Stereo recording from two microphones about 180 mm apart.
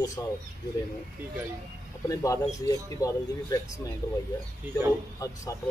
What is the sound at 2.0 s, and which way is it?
Speech, 20° left (ahead or behind).